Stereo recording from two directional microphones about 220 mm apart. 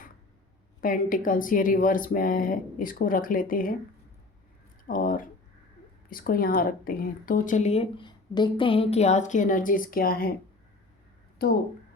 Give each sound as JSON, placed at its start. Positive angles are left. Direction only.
{"t": 0.8, "sound": "speech", "side_deg": 40}
{"t": 4.9, "sound": "speech", "side_deg": 40}
{"t": 11.4, "sound": "speech", "side_deg": 45}